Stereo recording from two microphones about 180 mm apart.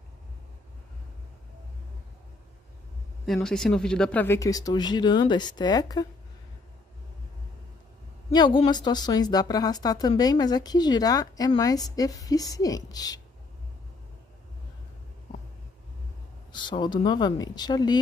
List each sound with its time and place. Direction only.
3.4 s a woman's voice: 5° left (ahead or behind); by 6.0 s 20° left (ahead or behind)
8.3 s a woman's voice: 25° left (ahead or behind)
16.5 s a woman's voice: 25° left (ahead or behind)